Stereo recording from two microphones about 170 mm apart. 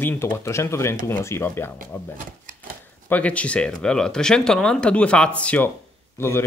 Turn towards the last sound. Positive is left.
turn(degrees=15)  # may be behind; listen again after turning